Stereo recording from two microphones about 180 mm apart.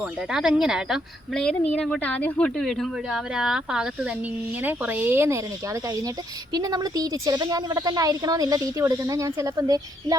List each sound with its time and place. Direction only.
0.0 s a woman's voice: 5° right (ahead or behind)
6.5 s a woman's voice: 20° right (ahead or behind)